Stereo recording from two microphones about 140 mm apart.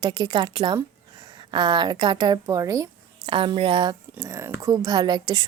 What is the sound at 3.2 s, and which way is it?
Speech, 35° right (ahead or behind).